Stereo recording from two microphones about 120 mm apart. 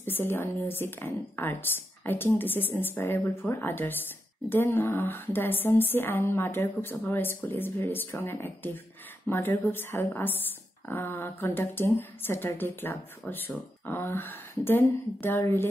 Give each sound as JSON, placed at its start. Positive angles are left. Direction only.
{"t": 0.0, "sound": "a woman's voice", "side_deg": 15}